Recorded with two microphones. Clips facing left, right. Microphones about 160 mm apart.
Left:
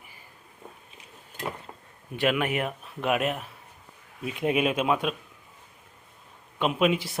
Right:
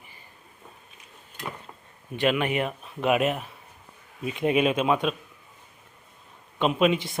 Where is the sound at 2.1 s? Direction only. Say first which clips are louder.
Right 1 dB; 5° left (ahead or behind).